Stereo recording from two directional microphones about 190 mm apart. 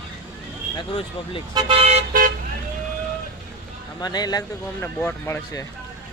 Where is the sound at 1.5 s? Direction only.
30° right (ahead or behind).